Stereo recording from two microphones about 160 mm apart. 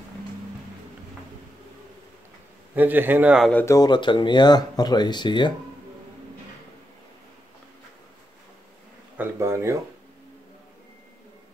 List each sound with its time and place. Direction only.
2.7 s a man's voice: 10° right (ahead or behind)
3.5 s speech: 20° left (ahead or behind)
9.1 s speech: 15° right (ahead or behind)